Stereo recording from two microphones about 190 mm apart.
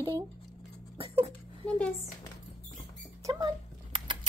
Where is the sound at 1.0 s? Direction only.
30° right (ahead or behind).